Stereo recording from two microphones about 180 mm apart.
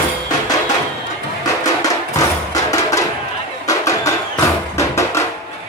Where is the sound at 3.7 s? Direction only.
15° left (ahead or behind).